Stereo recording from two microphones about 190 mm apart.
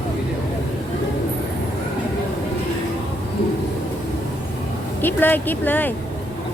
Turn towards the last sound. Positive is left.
turn(degrees=10)  # may be behind; listen again after turning